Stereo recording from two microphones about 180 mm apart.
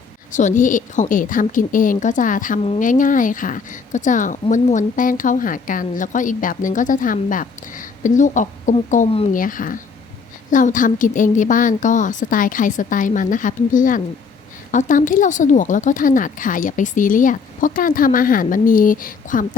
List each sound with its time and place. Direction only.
0.3 s speech: 45° left (ahead or behind)